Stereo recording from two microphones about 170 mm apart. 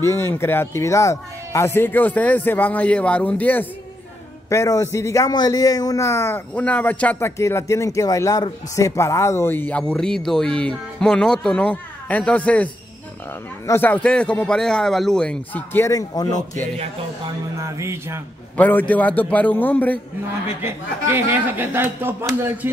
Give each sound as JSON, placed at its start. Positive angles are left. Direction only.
{"t": 0.0, "sound": "a man's voice", "side_deg": 15}
{"t": 13.7, "sound": "a man's voice", "side_deg": 10}
{"t": 17.6, "sound": "speech", "side_deg": -15}
{"t": 18.6, "sound": "a man's voice", "side_deg": 10}
{"t": 20.6, "sound": "speech", "side_deg": -10}